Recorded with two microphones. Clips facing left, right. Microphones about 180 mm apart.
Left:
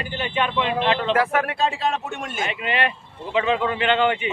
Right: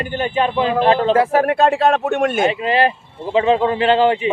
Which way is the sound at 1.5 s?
60° right (ahead or behind).